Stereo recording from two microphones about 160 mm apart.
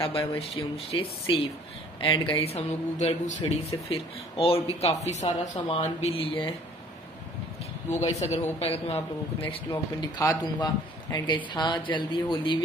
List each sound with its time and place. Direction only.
0.0 s a man's voice: 35° left (ahead or behind)
2.0 s a man's voice: 25° left (ahead or behind)
7.9 s a man's voice: 45° left (ahead or behind)